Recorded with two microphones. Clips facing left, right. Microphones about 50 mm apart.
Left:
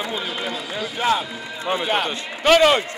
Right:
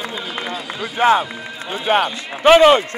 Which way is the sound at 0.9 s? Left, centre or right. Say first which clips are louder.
Right 7 dB; right.